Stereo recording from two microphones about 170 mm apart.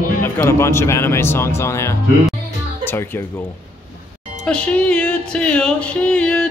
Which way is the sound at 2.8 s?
15° left (ahead or behind).